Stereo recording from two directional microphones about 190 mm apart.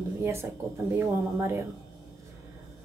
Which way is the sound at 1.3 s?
15° right (ahead or behind).